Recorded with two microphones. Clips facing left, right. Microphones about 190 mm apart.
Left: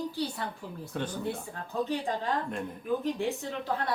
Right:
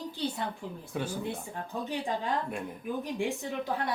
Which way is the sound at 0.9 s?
10° right (ahead or behind).